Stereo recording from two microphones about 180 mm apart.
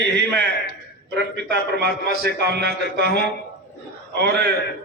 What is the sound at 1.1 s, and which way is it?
A man's voice, 65° right (ahead or behind).